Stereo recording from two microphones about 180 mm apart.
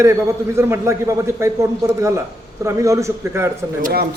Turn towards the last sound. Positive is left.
turn(degrees=-55)  # may be behind; listen again after turning